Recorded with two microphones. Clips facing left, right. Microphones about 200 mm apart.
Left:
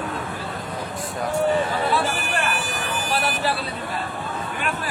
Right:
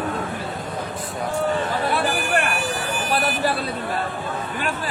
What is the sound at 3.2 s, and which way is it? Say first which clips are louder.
Speech: right 2 dB; 45° right (ahead or behind).